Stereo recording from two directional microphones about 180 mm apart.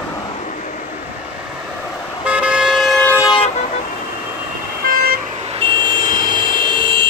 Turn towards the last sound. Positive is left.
turn(degrees=-25)  # may be behind; listen again after turning